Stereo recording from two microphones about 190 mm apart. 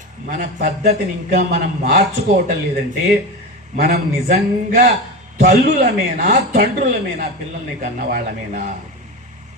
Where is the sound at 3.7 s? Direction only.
55° right (ahead or behind).